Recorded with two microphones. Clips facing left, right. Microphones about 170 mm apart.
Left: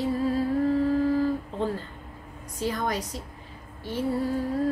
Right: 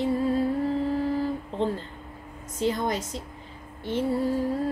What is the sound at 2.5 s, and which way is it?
Speech, 20° right (ahead or behind).